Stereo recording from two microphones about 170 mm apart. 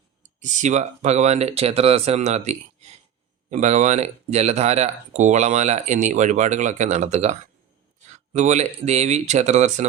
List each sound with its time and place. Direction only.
0.2 s speech: 45° right (ahead or behind)